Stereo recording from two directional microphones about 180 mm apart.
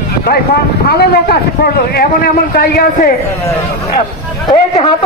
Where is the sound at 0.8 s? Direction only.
60° left (ahead or behind).